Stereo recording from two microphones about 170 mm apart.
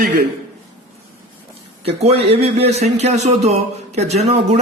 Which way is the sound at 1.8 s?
35° right (ahead or behind).